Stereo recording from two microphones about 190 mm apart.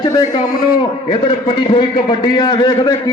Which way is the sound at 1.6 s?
25° left (ahead or behind).